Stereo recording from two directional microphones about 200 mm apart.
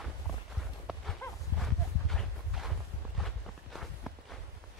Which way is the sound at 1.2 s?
10° left (ahead or behind).